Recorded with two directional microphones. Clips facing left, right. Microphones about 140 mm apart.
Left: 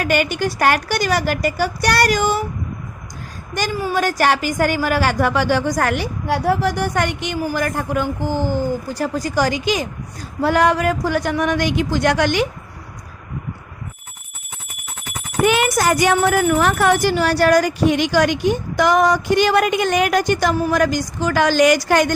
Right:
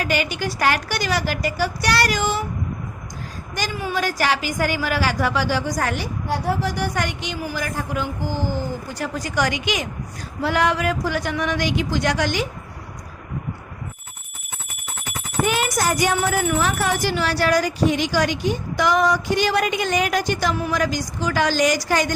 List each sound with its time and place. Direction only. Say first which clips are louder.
0.0 s a woman's voice: left 4 dB; 50° left (ahead or behind)
3.5 s a woman's voice: left 5 dB; 50° left (ahead or behind)
9.0 s a woman's voice: left 3 dB; 35° left (ahead or behind); by 12.5 s 60° left (ahead or behind)
15.4 s a child's voice: left 6 dB; 65° left (ahead or behind)